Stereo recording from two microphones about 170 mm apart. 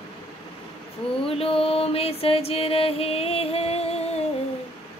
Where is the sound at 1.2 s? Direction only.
35° left (ahead or behind).